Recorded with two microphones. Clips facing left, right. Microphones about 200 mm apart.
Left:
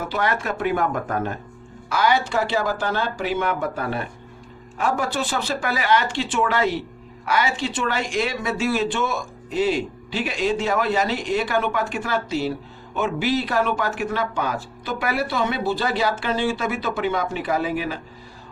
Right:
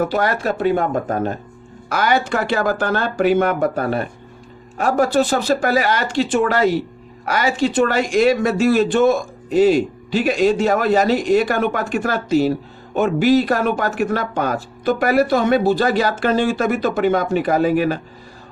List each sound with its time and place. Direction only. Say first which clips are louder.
0.0 s speech: right 6 dB; 40° right (ahead or behind)
1.9 s speech: right 3 dB; 50° right (ahead or behind)